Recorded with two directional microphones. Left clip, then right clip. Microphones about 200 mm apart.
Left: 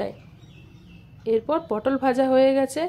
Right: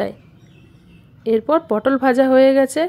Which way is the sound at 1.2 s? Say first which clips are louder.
Right 6 dB; 25° right (ahead or behind).